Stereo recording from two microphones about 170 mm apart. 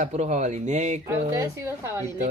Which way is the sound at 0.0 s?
40° right (ahead or behind).